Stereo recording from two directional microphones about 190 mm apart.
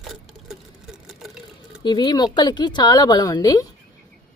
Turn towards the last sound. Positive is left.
turn(degrees=20)  # may be behind; listen again after turning